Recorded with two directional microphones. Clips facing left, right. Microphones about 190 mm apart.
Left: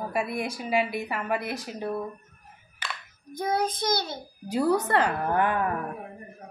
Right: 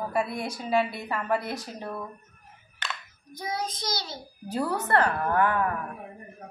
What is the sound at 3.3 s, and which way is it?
Child singing, 55° left (ahead or behind).